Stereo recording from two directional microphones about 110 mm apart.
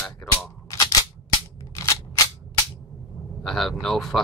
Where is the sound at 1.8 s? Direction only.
25° left (ahead or behind).